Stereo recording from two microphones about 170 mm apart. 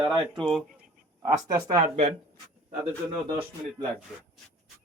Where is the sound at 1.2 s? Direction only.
20° right (ahead or behind).